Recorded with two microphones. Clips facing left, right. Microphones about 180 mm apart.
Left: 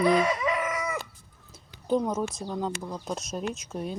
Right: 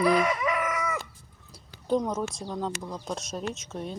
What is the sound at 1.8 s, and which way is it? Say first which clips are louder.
A woman's voice: left 1 dB; 5° left (ahead or behind).